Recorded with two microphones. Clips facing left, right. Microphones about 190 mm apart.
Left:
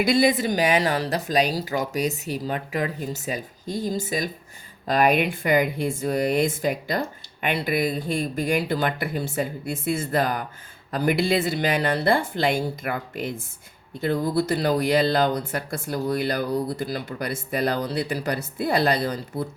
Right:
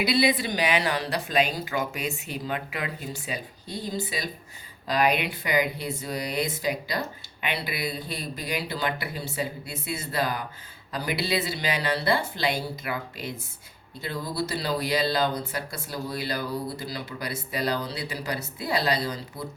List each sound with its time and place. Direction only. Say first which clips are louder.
0.0 s speech: left 4 dB; 45° left (ahead or behind)